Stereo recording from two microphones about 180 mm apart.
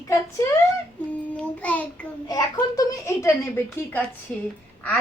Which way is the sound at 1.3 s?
5° left (ahead or behind).